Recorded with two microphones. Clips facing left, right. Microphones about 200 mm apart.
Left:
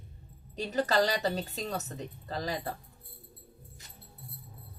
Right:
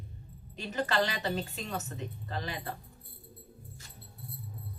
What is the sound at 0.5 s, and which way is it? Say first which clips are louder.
A woman's voice: left 3 dB; 35° left (ahead or behind).